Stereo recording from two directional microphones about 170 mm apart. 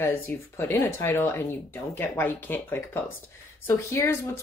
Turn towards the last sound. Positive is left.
turn(degrees=15)  # may be behind; listen again after turning